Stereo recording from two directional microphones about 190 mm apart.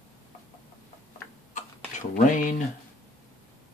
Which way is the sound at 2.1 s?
40° left (ahead or behind).